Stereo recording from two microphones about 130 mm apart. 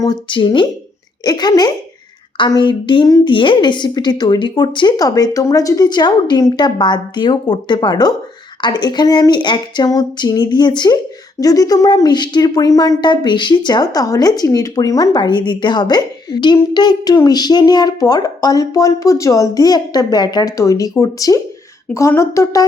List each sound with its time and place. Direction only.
0.0 s speech: 35° left (ahead or behind)